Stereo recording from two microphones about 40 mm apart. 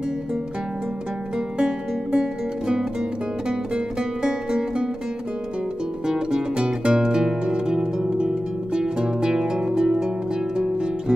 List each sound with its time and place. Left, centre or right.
1.6 s music: right
6.0 s music: centre